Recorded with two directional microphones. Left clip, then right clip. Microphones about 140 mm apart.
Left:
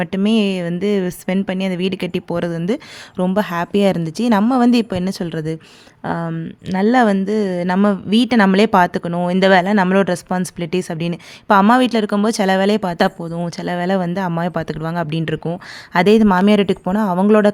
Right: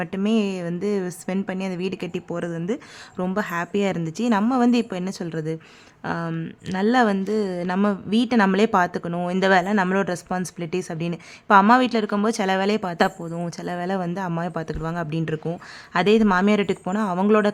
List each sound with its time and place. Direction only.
0.0 s speech: 40° left (ahead or behind)